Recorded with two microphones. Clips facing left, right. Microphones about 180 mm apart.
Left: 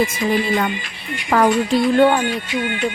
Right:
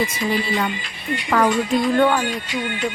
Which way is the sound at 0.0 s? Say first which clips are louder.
Left 3 dB; 50° left (ahead or behind).